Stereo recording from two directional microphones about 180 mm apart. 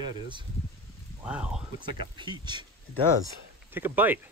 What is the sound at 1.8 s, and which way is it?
Speech, 25° right (ahead or behind).